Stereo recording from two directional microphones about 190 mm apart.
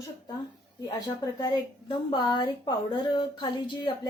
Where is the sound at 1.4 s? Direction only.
25° left (ahead or behind).